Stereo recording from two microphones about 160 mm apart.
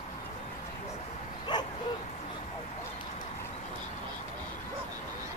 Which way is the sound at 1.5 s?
25° left (ahead or behind).